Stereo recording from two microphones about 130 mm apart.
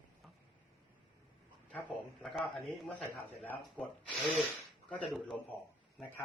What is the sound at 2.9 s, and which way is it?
Speech, 10° left (ahead or behind).